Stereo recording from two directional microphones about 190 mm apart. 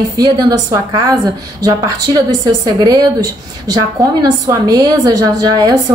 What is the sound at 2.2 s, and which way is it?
Speech, 20° right (ahead or behind).